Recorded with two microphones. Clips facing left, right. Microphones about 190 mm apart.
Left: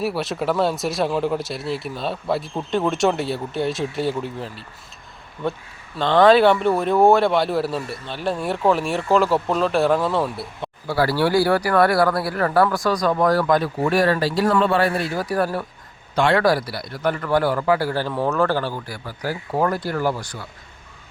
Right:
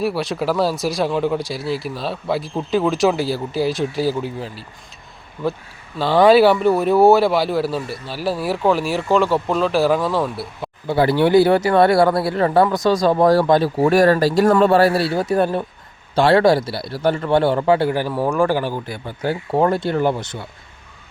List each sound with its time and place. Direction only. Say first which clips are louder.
0.0 s speech: right 2 dB; centre (ahead or behind)
10.8 s speech: right 4 dB; 20° right (ahead or behind)